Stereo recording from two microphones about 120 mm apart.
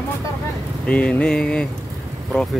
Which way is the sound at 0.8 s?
10° left (ahead or behind).